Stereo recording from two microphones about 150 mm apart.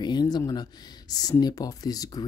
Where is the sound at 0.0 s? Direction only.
30° left (ahead or behind).